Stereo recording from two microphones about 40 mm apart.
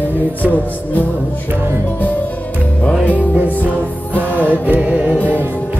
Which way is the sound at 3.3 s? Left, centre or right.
Right.